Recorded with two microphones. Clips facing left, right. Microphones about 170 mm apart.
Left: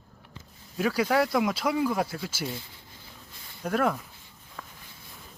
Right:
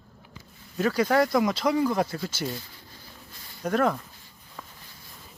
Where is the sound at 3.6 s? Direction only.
5° left (ahead or behind).